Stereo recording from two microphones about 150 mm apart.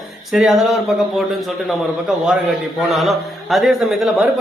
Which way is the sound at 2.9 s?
Centre (ahead or behind).